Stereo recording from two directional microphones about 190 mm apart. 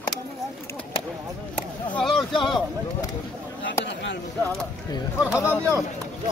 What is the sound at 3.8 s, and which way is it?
Speech, 65° left (ahead or behind).